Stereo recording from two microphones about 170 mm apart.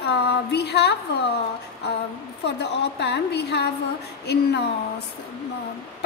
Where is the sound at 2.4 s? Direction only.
80° left.